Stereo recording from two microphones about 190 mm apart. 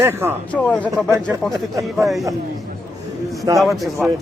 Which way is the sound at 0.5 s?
5° left (ahead or behind).